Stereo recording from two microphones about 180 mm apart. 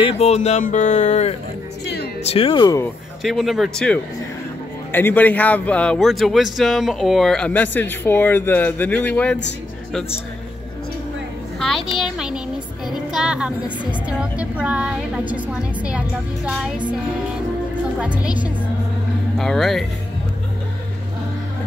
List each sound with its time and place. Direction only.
0.0 s speech: 35° left (ahead or behind)
2.3 s speech: 30° left (ahead or behind)
3.2 s a man's voice: centre (ahead or behind)
11.6 s a woman's voice: centre (ahead or behind)
17.9 s a woman's voice: 5° right (ahead or behind)